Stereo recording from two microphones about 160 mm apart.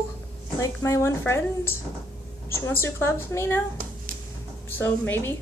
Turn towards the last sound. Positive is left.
turn(degrees=15)  # may be behind; listen again after turning